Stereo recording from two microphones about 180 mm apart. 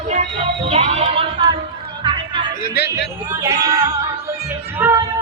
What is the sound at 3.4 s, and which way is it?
Speech, 15° right (ahead or behind).